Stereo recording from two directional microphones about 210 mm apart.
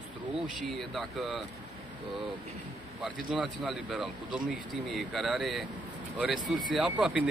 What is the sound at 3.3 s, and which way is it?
Speech, 5° right (ahead or behind).